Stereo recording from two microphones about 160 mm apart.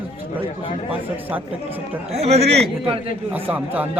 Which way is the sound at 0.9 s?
10° right (ahead or behind).